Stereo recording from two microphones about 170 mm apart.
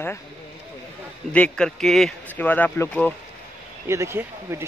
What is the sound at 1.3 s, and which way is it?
Speech, 5° left (ahead or behind).